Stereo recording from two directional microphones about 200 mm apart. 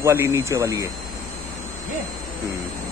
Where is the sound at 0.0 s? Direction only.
15° right (ahead or behind).